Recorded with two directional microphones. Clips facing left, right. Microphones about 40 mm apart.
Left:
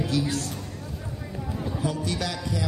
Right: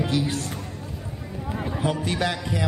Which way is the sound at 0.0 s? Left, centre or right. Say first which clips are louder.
Right 1 dB; right.